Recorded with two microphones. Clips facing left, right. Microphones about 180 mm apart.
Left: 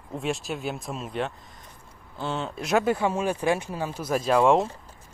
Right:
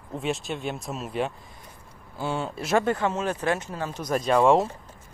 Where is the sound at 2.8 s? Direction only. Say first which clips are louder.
Left 1 dB; 10° left (ahead or behind).